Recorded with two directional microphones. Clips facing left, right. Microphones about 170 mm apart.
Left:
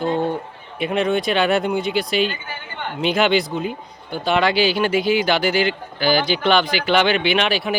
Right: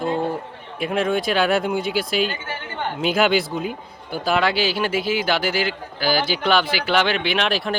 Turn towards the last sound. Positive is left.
turn(degrees=0)  # may be behind; listen again after turning